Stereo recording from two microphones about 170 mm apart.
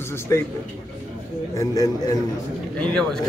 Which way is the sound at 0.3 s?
15° left (ahead or behind).